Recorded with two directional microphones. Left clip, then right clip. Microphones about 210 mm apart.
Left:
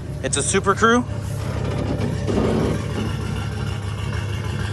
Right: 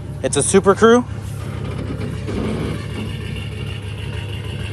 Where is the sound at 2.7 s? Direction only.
10° left (ahead or behind).